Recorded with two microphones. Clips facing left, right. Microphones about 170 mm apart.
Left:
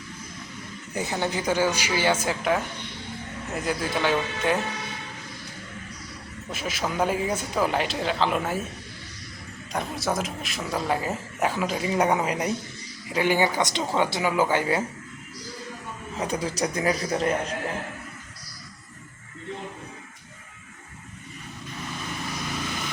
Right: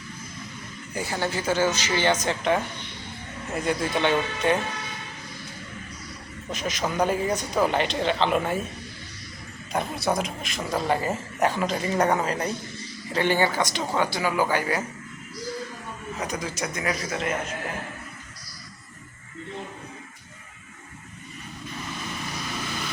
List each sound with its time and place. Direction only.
0.9 s speech: 20° left (ahead or behind); by 4.5 s 5° left (ahead or behind)
6.5 s speech: 5° left (ahead or behind)
9.7 s speech: centre (ahead or behind); by 14.8 s 25° left (ahead or behind)
16.1 s a man's voice: 30° left (ahead or behind)